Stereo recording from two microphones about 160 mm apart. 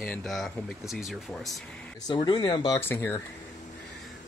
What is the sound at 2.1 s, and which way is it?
Speech, 25° left (ahead or behind).